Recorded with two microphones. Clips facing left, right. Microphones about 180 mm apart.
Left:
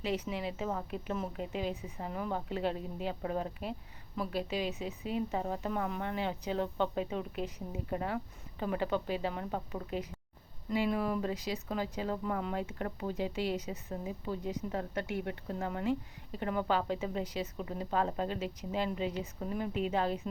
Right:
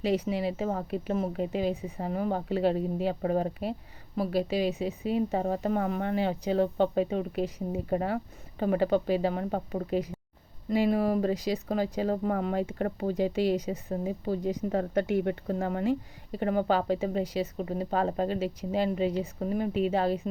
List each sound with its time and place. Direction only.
0.0 s speech: 35° right (ahead or behind)
14.7 s speech: 50° right (ahead or behind); by 20.1 s 35° right (ahead or behind)